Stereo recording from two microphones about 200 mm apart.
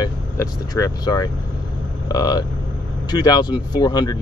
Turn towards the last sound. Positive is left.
turn(degrees=20)  # may be behind; listen again after turning